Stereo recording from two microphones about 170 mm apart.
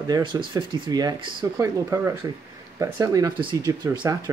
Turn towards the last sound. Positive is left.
turn(degrees=-20)  # may be behind; listen again after turning